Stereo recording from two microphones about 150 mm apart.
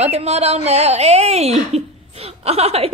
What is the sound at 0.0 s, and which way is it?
Speech, 45° right (ahead or behind).